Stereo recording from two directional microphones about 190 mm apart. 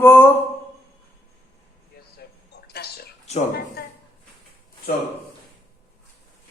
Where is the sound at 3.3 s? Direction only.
35° left (ahead or behind).